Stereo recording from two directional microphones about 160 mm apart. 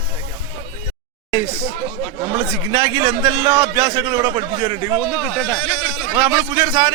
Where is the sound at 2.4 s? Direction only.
15° right (ahead or behind).